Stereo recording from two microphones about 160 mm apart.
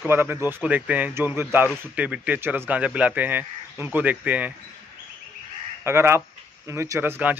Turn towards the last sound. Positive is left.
turn(degrees=-10)  # may be behind; listen again after turning